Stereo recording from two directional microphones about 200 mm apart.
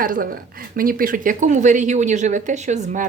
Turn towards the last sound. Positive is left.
turn(degrees=-35)  # may be behind; listen again after turning